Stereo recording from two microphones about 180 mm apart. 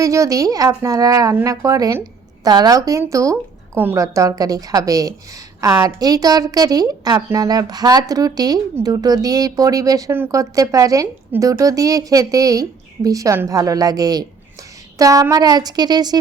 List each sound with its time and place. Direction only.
0.0 s a woman's voice: 20° right (ahead or behind)